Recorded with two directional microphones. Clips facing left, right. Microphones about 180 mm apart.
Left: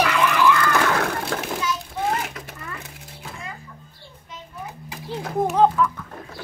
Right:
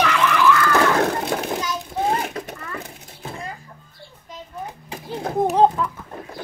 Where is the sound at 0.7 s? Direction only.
30° right (ahead or behind).